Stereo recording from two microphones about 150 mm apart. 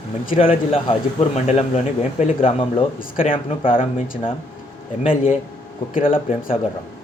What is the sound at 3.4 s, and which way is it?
Speech, 35° left (ahead or behind).